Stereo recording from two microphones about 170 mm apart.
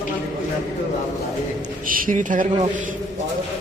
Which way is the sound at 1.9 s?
55° right (ahead or behind).